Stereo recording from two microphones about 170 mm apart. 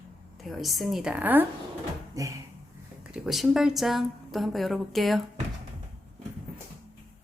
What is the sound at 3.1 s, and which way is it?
Speech, centre (ahead or behind).